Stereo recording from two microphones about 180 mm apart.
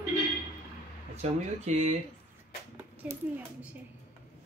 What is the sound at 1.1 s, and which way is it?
Speech, 40° right (ahead or behind).